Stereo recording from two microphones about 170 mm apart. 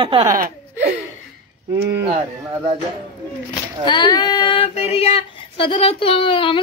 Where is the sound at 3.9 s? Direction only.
25° left (ahead or behind).